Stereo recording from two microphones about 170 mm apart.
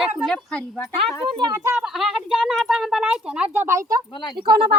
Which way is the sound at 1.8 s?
Centre (ahead or behind).